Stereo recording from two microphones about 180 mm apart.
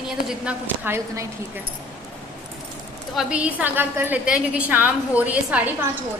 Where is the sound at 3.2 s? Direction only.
5° right (ahead or behind).